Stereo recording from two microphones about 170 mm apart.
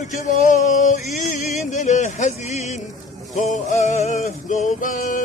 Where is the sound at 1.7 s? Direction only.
45° left (ahead or behind).